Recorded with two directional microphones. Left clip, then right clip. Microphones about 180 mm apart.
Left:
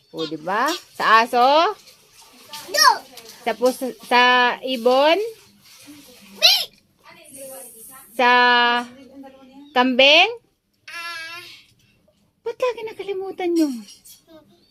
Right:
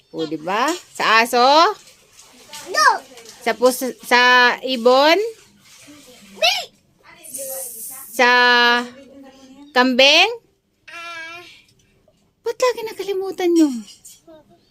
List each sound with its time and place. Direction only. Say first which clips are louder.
0.1 s speech: right 2 dB; 5° right (ahead or behind)
0.4 s speech: right 1 dB; 15° right (ahead or behind)
3.4 s speech: right 3 dB; 25° right (ahead or behind)
8.1 s speech: right 2 dB; 20° right (ahead or behind)
12.4 s speech: right 4 dB; 20° right (ahead or behind)